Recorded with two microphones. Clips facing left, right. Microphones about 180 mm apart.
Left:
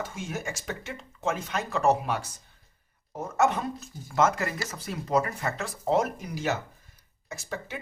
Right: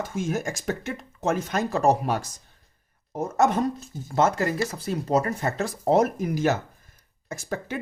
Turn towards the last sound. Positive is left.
turn(degrees=-50)  # may be behind; listen again after turning